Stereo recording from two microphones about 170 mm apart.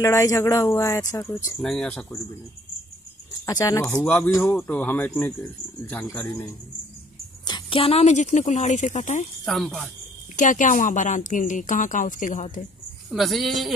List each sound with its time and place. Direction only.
0.0 s speech: 20° left (ahead or behind)
1.6 s speech: 5° left (ahead or behind)
3.4 s speech: 20° left (ahead or behind)
7.4 s speech: 30° left (ahead or behind); by 9.2 s 45° left (ahead or behind)
9.4 s speech: centre (ahead or behind)
10.3 s speech: 50° left (ahead or behind)
13.1 s speech: centre (ahead or behind)